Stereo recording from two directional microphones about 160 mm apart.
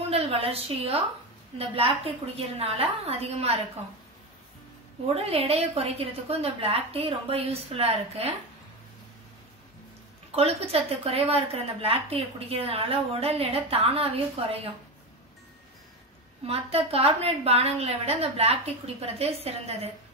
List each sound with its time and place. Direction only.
0.1 s a woman's voice: 35° right (ahead or behind)
5.1 s a woman's voice: 40° right (ahead or behind)
10.3 s a woman's voice: 40° right (ahead or behind)
16.4 s a woman's voice: 40° right (ahead or behind)